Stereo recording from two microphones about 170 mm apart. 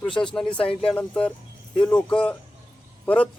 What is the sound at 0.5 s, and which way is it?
Speech, 35° left (ahead or behind).